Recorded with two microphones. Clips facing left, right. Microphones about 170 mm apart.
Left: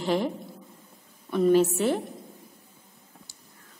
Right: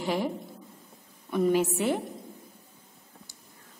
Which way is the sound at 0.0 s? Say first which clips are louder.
Left 3 dB; 10° right (ahead or behind).